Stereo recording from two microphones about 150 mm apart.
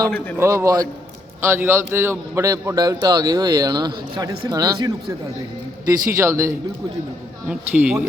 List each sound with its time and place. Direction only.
0.3 s a man's voice: 20° right (ahead or behind)
6.1 s a man's voice: 20° right (ahead or behind)
7.4 s speech: 10° right (ahead or behind)